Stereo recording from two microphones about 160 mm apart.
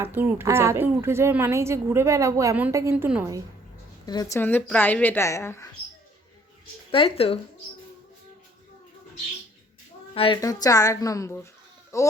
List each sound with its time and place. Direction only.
0.0 s a woman's voice: 10° right (ahead or behind)
4.0 s a woman's voice: 25° left (ahead or behind)
4.4 s a woman's voice: 10° left (ahead or behind)
6.9 s speech: 35° left (ahead or behind)
10.2 s speech: 35° left (ahead or behind)
10.4 s a woman's voice: 20° left (ahead or behind)